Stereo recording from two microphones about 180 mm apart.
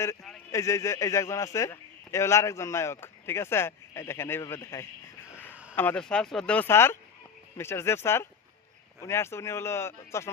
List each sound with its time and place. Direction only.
0.5 s a man's voice: 15° left (ahead or behind)